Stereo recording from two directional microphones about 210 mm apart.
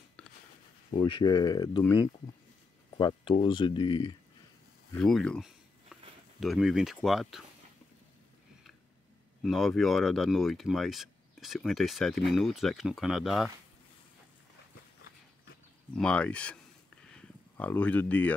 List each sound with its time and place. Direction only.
0.9 s speech: 25° left (ahead or behind)
4.9 s speech: 5° left (ahead or behind)
9.4 s speech: centre (ahead or behind)
15.9 s speech: 5° left (ahead or behind)
17.1 s a sound: 5° left (ahead or behind)